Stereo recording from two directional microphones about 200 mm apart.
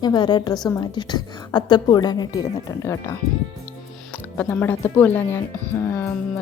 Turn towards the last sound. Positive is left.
turn(degrees=10)  # may be behind; listen again after turning